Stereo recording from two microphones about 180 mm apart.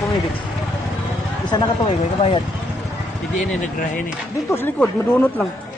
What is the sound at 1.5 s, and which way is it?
Speech, 20° left (ahead or behind).